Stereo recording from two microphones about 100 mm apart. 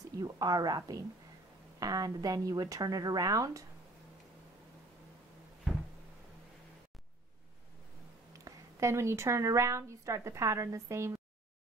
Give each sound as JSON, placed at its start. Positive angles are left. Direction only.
{"t": 0.2, "sound": "speech", "side_deg": -40}
{"t": 8.3, "sound": "a woman's voice", "side_deg": -35}